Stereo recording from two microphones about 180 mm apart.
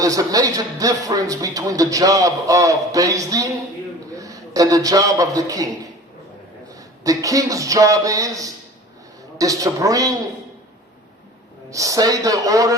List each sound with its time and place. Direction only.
0.0 s a man's voice: 20° right (ahead or behind)
11.7 s speech: 20° right (ahead or behind)